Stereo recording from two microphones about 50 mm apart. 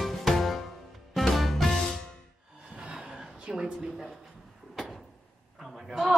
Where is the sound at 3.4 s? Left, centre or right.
Right.